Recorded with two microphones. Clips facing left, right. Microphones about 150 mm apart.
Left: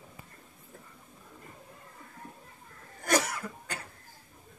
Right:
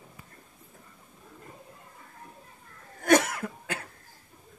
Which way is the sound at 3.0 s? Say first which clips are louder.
Right 6 dB; 55° right (ahead or behind).